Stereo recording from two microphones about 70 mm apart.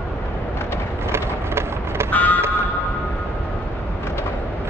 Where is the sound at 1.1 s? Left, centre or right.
Right.